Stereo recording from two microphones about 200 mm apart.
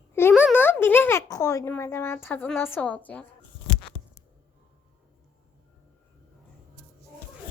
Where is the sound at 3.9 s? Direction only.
30° left (ahead or behind).